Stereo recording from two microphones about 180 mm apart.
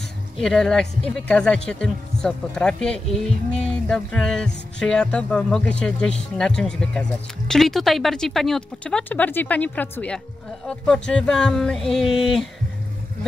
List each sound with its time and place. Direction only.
0.4 s speech: 5° left (ahead or behind)